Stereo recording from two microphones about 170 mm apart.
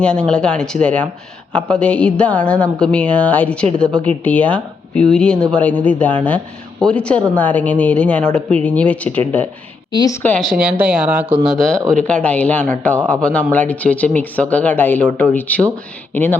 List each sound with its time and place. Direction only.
0.0 s speech: 5° left (ahead or behind)
9.9 s a woman's voice: 25° left (ahead or behind)
10.2 s speech: 5° left (ahead or behind)
10.5 s speech: 5° right (ahead or behind)
11.4 s speech: 5° left (ahead or behind)